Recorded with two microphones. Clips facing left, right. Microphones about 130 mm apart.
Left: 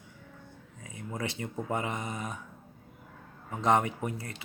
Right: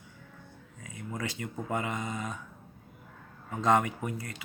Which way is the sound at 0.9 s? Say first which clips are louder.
Left 1 dB; 25° left (ahead or behind).